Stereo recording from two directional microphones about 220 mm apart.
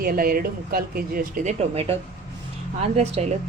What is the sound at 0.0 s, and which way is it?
Speech, 40° right (ahead or behind).